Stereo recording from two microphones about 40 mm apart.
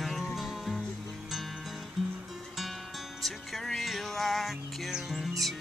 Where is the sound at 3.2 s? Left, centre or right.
Centre.